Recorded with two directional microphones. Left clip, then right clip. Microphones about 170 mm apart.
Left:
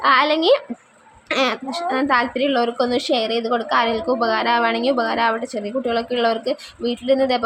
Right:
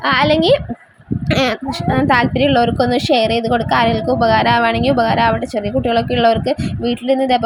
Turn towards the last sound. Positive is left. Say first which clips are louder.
# right 3 dB
turn(degrees=-15)  # may be behind; listen again after turning